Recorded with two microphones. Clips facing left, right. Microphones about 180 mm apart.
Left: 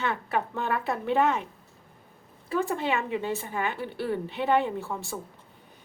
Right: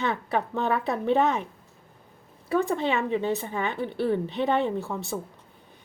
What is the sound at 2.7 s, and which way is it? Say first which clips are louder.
A woman's voice: right 3 dB; 20° right (ahead or behind).